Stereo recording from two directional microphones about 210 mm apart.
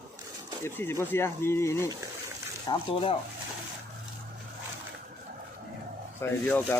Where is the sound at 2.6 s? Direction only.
25° left (ahead or behind).